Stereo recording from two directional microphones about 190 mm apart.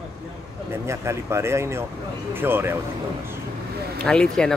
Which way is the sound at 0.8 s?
15° right (ahead or behind).